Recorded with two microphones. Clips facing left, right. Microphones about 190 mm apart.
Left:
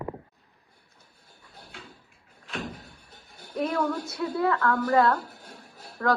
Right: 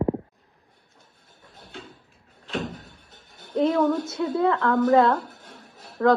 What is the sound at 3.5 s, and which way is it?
A woman's voice, 20° right (ahead or behind).